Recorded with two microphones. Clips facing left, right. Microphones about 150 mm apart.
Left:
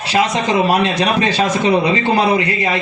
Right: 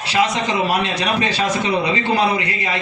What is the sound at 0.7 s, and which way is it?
A man's voice, 20° left (ahead or behind).